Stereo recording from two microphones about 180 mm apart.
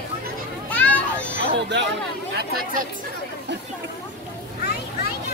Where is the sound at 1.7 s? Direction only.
75° right (ahead or behind).